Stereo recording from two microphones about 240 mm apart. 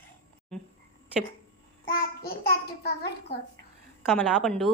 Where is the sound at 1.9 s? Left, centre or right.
Left.